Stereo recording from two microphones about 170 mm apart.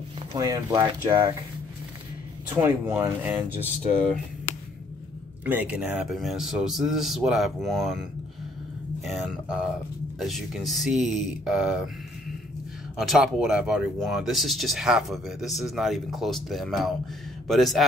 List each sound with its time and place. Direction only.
0.4 s speech: 20° right (ahead or behind)
2.5 s speech: 10° right (ahead or behind)
5.4 s speech: 10° right (ahead or behind)
9.0 s speech: centre (ahead or behind)
12.9 s speech: centre (ahead or behind)